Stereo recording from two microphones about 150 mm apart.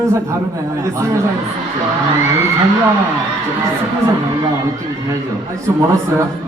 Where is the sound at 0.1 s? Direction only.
20° right (ahead or behind).